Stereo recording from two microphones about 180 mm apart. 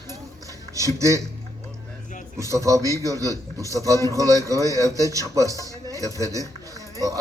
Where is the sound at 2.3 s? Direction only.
15° right (ahead or behind).